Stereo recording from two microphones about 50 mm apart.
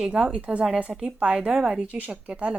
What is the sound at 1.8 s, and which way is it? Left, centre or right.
Speech, right.